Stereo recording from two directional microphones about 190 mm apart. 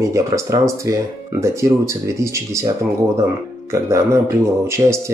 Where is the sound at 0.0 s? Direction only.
15° right (ahead or behind).